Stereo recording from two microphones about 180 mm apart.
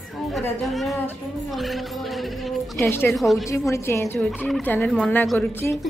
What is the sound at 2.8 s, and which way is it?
Speech, 10° left (ahead or behind).